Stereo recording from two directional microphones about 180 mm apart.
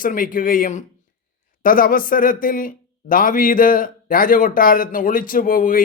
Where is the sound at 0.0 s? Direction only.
50° left (ahead or behind).